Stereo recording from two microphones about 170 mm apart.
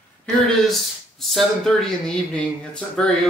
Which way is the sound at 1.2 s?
Centre (ahead or behind).